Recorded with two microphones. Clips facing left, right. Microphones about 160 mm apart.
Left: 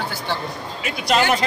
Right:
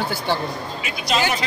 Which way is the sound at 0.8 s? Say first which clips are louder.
Left 3 dB; 60° left (ahead or behind).